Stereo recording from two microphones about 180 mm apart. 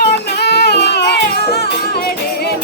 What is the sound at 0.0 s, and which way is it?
Music, 65° left (ahead or behind).